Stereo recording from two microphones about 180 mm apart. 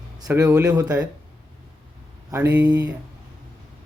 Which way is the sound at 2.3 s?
10° right (ahead or behind).